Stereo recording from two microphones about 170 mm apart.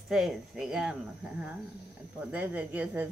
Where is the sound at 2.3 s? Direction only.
10° right (ahead or behind).